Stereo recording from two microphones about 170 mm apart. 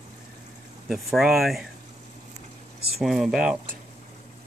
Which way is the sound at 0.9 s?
Centre (ahead or behind).